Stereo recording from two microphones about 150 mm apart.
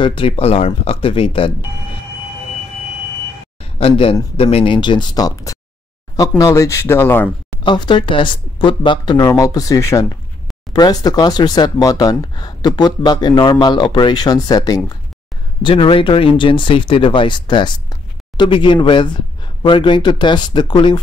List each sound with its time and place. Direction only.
0.0 s speech: 35° left (ahead or behind)
3.6 s speech: 40° left (ahead or behind); by 7.2 s 15° left (ahead or behind)
7.6 s speech: 30° left (ahead or behind)
15.6 s speech: 35° left (ahead or behind)